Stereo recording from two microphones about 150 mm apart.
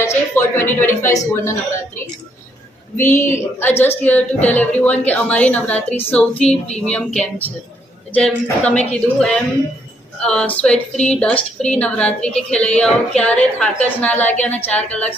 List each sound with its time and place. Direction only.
0.0 s a woman's voice: 15° left (ahead or behind)
3.0 s a woman's voice: 15° left (ahead or behind)